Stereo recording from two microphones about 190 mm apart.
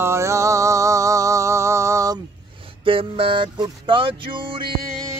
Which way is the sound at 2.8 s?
30° right (ahead or behind).